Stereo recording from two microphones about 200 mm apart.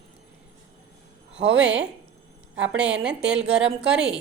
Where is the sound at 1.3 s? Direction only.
65° right (ahead or behind).